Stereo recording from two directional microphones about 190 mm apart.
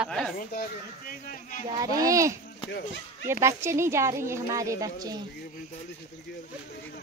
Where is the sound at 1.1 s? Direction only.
50° left (ahead or behind).